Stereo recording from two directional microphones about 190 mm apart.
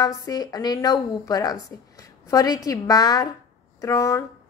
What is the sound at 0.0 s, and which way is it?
Speech, 20° left (ahead or behind).